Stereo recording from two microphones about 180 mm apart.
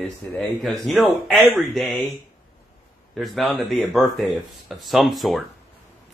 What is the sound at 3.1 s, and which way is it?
Speech, centre (ahead or behind).